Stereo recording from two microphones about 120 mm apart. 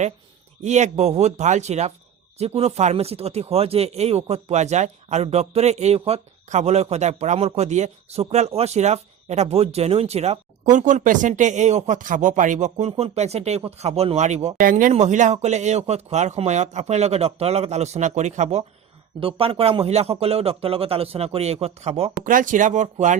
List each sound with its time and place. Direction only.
0.6 s speech: 75° right (ahead or behind)
19.2 s speech: 50° right (ahead or behind)
22.2 s speech: 90° right